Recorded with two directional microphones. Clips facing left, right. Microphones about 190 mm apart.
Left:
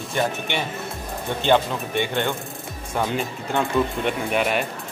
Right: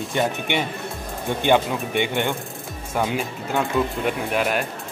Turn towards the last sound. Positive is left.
turn(degrees=0)  # may be behind; listen again after turning